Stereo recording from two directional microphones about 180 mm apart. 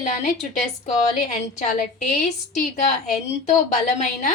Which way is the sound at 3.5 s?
40° left (ahead or behind).